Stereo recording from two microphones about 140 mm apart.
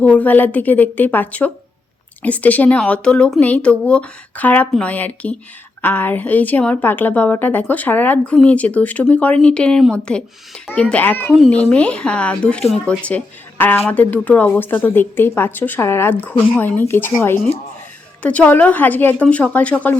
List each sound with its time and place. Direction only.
0.0 s a woman's voice: 10° left (ahead or behind)